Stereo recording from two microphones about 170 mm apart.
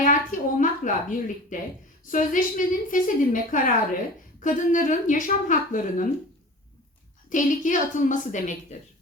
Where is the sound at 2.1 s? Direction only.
50° left (ahead or behind).